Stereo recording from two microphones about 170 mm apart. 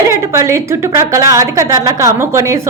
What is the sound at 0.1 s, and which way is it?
Speech, 15° right (ahead or behind).